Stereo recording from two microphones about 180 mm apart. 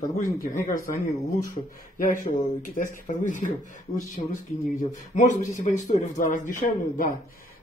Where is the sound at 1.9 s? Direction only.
50° left (ahead or behind).